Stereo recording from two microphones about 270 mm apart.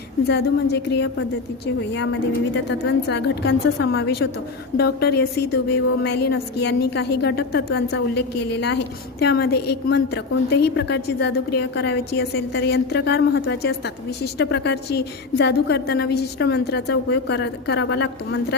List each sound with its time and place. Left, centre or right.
0.3 s a woman's voice: left